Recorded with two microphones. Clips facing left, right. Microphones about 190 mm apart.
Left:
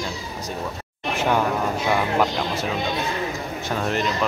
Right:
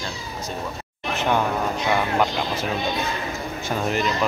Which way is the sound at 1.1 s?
5° left (ahead or behind).